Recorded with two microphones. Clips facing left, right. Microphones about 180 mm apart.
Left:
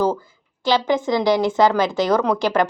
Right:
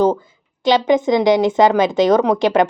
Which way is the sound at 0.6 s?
20° right (ahead or behind).